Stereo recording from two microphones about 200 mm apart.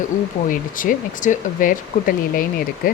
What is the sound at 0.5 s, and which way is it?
Speech, 40° left (ahead or behind).